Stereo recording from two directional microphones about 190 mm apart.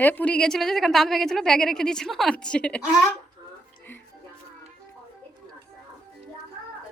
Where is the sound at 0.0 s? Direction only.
10° left (ahead or behind).